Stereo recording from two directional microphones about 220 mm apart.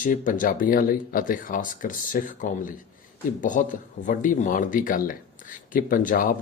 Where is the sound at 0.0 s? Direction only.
35° left (ahead or behind).